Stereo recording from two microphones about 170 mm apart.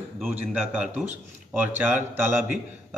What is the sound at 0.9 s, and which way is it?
Speech, 45° right (ahead or behind).